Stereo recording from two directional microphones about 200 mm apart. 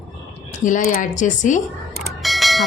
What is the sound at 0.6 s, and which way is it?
A woman's voice, 45° left (ahead or behind).